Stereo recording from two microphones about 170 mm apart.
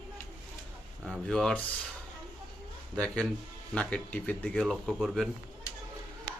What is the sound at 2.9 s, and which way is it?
Speech, 5° left (ahead or behind).